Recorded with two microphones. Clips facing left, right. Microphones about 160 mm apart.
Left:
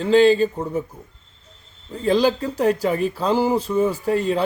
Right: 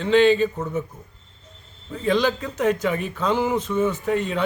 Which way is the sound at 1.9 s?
35° left (ahead or behind).